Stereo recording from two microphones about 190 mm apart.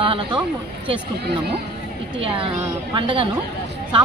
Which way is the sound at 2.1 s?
30° right (ahead or behind).